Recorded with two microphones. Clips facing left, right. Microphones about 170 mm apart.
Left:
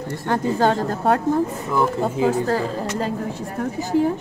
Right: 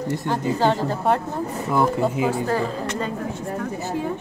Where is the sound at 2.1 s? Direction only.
40° left (ahead or behind).